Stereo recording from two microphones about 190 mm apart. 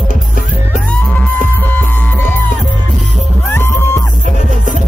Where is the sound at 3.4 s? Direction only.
10° left (ahead or behind).